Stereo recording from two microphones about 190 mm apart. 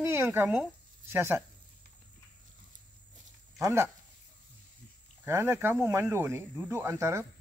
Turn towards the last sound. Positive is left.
turn(degrees=-15)  # may be behind; listen again after turning